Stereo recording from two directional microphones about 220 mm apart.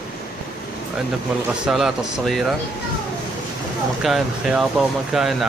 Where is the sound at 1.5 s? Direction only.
Centre (ahead or behind).